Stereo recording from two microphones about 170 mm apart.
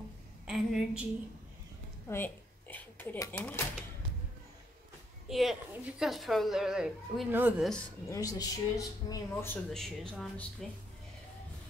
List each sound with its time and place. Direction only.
0.5 s speech: centre (ahead or behind)
2.0 s speech: 10° left (ahead or behind)
5.3 s speech: centre (ahead or behind)
8.1 s speech: 20° left (ahead or behind)
9.7 s speech: centre (ahead or behind)